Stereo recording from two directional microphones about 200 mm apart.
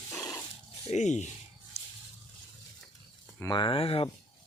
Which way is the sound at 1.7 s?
30° left (ahead or behind).